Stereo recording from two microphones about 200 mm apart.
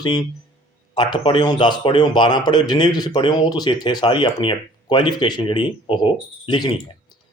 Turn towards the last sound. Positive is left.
turn(degrees=20)  # may be behind; listen again after turning